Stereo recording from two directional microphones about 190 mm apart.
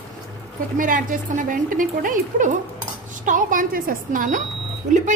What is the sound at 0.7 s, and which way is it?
A woman's voice, 45° right (ahead or behind).